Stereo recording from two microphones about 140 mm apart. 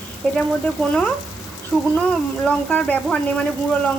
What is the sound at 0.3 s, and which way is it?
A woman's voice, 10° left (ahead or behind).